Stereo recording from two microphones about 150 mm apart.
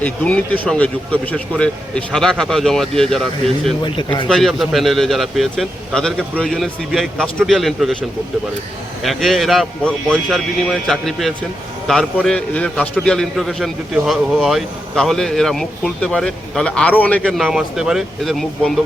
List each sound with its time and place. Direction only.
0.0 s a man's voice: 10° left (ahead or behind)
3.8 s speech: 35° left (ahead or behind)
4.3 s a man's voice: centre (ahead or behind)
9.0 s a man's voice: centre (ahead or behind)